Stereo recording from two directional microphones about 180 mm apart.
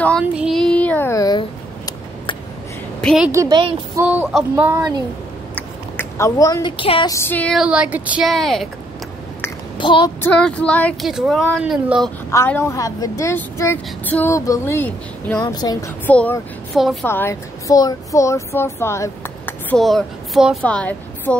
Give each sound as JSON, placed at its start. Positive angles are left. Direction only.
{"t": 0.2, "sound": "child singing", "side_deg": -5}
{"t": 3.0, "sound": "a sound", "side_deg": 0}
{"t": 3.3, "sound": "a woman's voice", "side_deg": -20}
{"t": 4.0, "sound": "speech", "side_deg": -10}
{"t": 5.9, "sound": "a woman's voice", "side_deg": 15}
{"t": 7.2, "sound": "a woman's voice", "side_deg": 10}
{"t": 7.6, "sound": "speech", "side_deg": -5}
{"t": 9.8, "sound": "child singing", "side_deg": 25}
{"t": 10.2, "sound": "speech", "side_deg": 5}
{"t": 12.3, "sound": "a woman's voice", "side_deg": 15}
{"t": 15.4, "sound": "a woman's voice", "side_deg": 20}
{"t": 16.1, "sound": "a woman's voice", "side_deg": 5}
{"t": 19.8, "sound": "a woman's voice", "side_deg": 0}